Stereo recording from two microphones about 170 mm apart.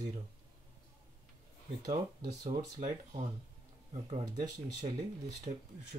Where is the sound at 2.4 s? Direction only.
20° right (ahead or behind).